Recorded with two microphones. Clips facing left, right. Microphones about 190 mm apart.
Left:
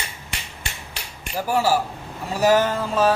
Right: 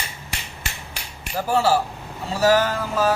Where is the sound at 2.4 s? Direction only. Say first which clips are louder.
Even; 20° left (ahead or behind).